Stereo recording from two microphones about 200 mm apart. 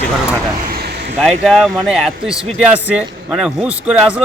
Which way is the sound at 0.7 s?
55° right (ahead or behind).